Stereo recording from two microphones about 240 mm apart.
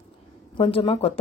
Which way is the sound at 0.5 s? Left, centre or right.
Left.